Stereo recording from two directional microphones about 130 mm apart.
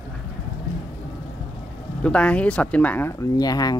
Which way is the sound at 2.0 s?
10° left (ahead or behind).